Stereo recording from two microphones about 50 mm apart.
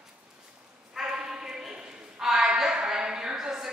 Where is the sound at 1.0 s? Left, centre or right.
Centre.